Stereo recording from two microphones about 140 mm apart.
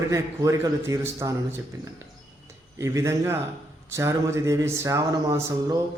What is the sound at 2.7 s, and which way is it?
Speech, 20° right (ahead or behind).